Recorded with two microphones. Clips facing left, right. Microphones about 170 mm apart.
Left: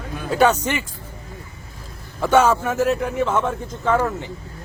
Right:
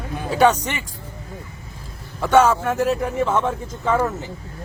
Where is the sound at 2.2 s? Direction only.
5° left (ahead or behind).